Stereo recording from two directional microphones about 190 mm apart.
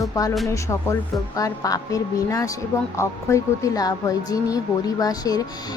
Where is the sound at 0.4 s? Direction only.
15° left (ahead or behind).